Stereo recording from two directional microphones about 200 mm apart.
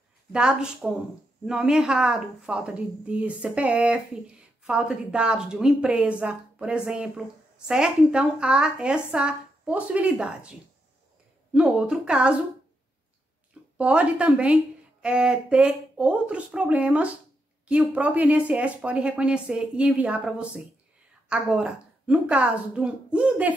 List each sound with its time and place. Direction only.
0.3 s a woman's voice: 5° right (ahead or behind)
11.5 s a woman's voice: 5° right (ahead or behind)
13.7 s a woman's voice: 5° right (ahead or behind)